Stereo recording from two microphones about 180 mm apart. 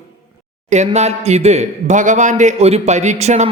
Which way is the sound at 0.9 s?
35° right (ahead or behind).